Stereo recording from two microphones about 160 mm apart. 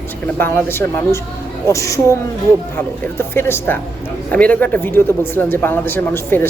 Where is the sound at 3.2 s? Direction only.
15° left (ahead or behind).